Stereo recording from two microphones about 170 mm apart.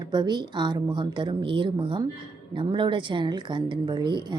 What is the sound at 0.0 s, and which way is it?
A woman's voice, 25° right (ahead or behind).